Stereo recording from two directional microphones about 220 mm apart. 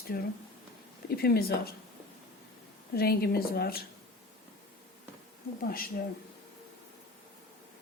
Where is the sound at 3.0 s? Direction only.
45° left (ahead or behind).